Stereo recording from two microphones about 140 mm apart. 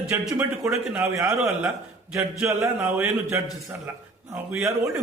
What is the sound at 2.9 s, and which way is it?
Speech, 10° right (ahead or behind).